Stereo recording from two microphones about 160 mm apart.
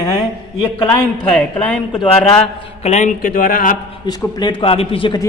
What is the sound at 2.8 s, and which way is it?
Speech, 50° left (ahead or behind).